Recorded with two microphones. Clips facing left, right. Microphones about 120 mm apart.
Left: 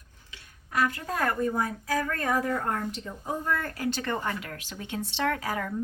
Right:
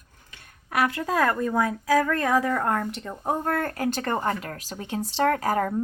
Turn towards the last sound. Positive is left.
turn(degrees=-45)  # may be behind; listen again after turning